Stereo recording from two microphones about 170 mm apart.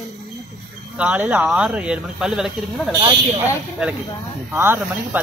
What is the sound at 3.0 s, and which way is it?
Speech, 35° right (ahead or behind).